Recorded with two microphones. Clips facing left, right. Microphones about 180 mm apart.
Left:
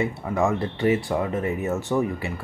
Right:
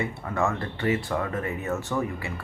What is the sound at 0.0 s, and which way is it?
Speech, 15° left (ahead or behind).